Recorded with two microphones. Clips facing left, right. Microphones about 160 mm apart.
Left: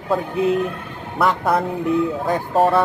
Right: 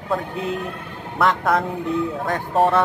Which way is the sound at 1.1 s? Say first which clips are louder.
Left 1 dB; centre (ahead or behind).